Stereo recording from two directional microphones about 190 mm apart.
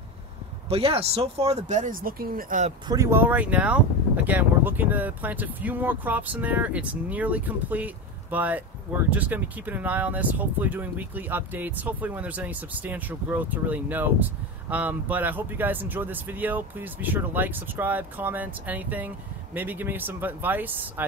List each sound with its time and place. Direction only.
0.7 s speech: 30° right (ahead or behind)
2.9 s speech: 15° right (ahead or behind)